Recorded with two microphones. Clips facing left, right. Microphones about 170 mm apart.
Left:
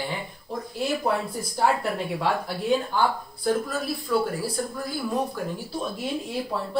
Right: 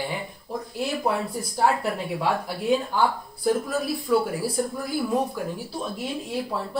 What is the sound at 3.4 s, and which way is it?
Speech, 15° right (ahead or behind).